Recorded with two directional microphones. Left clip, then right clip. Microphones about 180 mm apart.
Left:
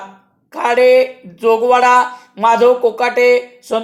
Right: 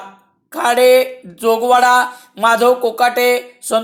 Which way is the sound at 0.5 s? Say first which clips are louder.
Even; 25° right (ahead or behind).